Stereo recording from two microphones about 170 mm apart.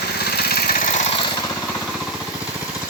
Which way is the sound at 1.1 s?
30° left (ahead or behind).